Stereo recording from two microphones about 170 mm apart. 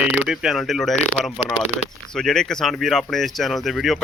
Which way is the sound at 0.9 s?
40° left (ahead or behind).